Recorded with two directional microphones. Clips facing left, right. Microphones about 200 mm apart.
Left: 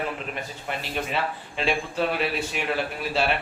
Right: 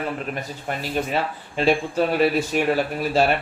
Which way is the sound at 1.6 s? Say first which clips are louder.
Right 6 dB; 45° right (ahead or behind).